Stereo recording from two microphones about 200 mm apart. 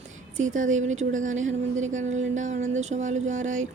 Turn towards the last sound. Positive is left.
turn(degrees=-40)  # may be behind; listen again after turning